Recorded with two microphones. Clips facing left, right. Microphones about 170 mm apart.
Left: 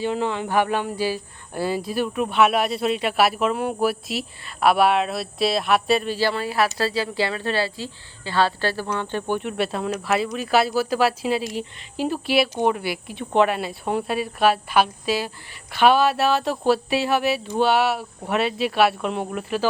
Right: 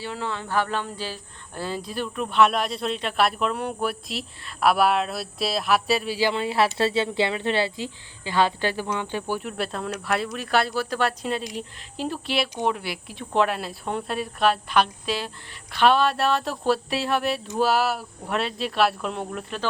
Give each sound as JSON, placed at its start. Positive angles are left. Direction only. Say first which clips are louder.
{"t": 0.0, "sound": "speech", "louder": "left 7 dB", "side_deg": 20}
{"t": 6.1, "sound": "speech", "louder": "even", "side_deg": -20}
{"t": 9.3, "sound": "speech", "louder": "left 6 dB", "side_deg": 0}